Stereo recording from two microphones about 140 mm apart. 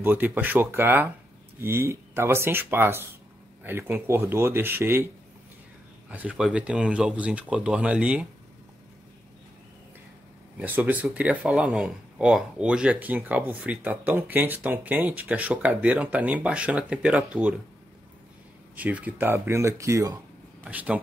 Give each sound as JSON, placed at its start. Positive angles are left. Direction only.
{"t": 0.0, "sound": "speech", "side_deg": -15}
{"t": 10.6, "sound": "speech", "side_deg": -10}
{"t": 18.8, "sound": "speech", "side_deg": -10}
{"t": 20.6, "sound": "speech", "side_deg": -10}